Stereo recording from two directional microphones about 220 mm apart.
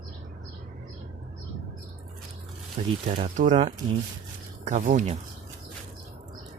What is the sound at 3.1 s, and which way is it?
Speech, 30° right (ahead or behind).